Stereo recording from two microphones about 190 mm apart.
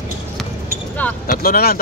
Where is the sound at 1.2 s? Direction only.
50° left (ahead or behind).